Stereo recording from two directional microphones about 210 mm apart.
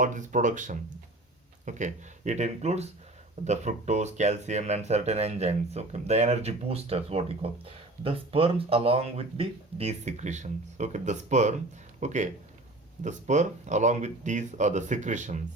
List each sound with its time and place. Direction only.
0.0 s speech: 35° right (ahead or behind)